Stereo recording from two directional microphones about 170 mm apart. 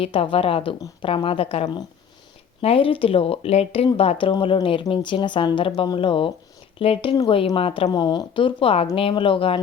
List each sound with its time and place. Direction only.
0.0 s a woman's voice: 35° left (ahead or behind)